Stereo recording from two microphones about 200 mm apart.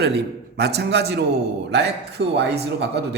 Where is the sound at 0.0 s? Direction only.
55° right (ahead or behind).